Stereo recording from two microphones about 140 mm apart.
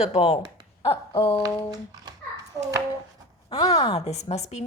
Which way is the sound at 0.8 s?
35° left (ahead or behind).